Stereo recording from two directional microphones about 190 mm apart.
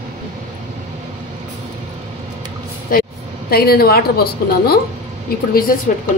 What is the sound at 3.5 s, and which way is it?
A woman's voice, 55° left (ahead or behind).